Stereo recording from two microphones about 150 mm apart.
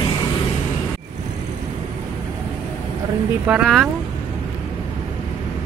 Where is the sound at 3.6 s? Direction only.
Centre (ahead or behind).